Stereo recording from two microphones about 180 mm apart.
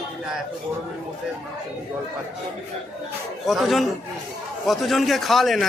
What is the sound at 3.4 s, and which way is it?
A man's voice, centre (ahead or behind).